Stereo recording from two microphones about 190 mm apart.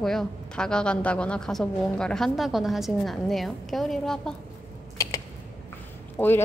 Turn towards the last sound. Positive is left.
turn(degrees=10)  # may be behind; listen again after turning